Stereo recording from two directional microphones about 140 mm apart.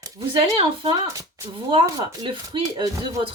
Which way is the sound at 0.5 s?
35° right (ahead or behind).